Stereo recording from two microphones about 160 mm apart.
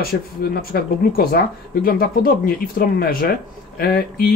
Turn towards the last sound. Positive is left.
turn(degrees=65)  # may be behind; listen again after turning